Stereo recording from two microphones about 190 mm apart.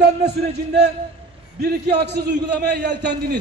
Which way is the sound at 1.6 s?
60° right (ahead or behind).